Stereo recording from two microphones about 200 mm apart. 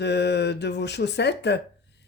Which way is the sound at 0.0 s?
55° left (ahead or behind).